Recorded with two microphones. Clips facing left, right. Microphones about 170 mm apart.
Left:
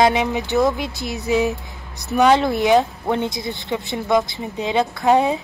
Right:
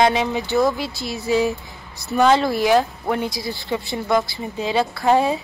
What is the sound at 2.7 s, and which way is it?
Speech, centre (ahead or behind).